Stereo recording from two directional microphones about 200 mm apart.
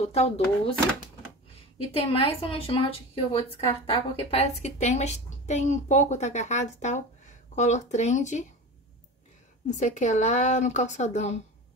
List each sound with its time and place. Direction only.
0.0 s a woman's voice: 30° left (ahead or behind)
2.1 s a woman's voice: 25° left (ahead or behind)
9.7 s a woman's voice: 35° left (ahead or behind)